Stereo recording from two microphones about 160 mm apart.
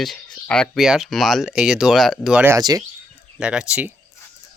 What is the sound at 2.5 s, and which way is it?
Speech, 20° right (ahead or behind).